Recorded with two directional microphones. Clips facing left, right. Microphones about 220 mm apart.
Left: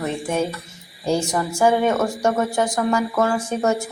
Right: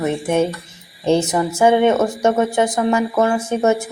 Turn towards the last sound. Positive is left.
turn(degrees=-20)  # may be behind; listen again after turning